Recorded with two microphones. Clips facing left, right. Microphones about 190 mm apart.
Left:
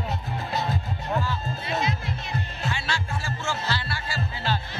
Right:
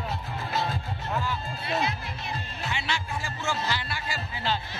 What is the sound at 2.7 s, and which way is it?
Music, 20° right (ahead or behind).